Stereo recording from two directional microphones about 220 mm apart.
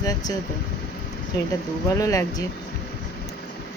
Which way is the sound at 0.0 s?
15° left (ahead or behind).